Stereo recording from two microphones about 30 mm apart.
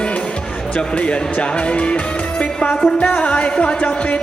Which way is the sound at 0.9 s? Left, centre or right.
Left.